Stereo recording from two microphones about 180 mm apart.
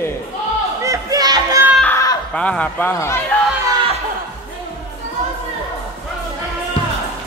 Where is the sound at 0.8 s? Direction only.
20° right (ahead or behind).